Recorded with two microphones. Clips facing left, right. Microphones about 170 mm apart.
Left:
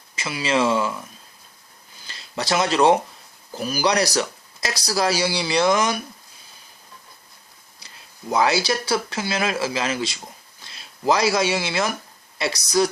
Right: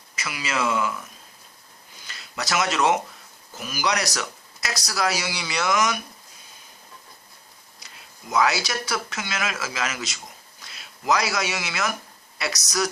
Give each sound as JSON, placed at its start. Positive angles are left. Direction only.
{"t": 0.2, "sound": "speech", "side_deg": 30}
{"t": 2.0, "sound": "speech", "side_deg": 30}
{"t": 8.3, "sound": "speech", "side_deg": 30}